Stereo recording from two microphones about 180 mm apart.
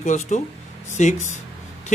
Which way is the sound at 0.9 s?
40° left (ahead or behind).